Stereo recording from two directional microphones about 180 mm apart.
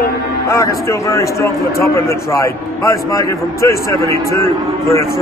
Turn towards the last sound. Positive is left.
turn(degrees=15)  # may be behind; listen again after turning